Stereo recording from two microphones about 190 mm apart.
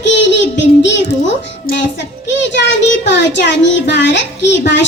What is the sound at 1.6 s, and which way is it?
A child's voice, 65° left (ahead or behind).